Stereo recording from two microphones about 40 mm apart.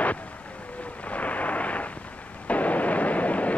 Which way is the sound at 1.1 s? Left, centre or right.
Left.